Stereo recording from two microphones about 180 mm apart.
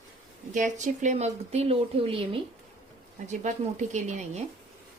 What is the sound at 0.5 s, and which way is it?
A woman's voice, 45° right (ahead or behind).